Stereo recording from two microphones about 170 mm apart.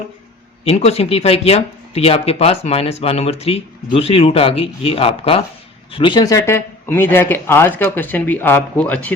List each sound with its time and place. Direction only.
0.6 s speech: 35° left (ahead or behind); by 9.1 s 10° left (ahead or behind)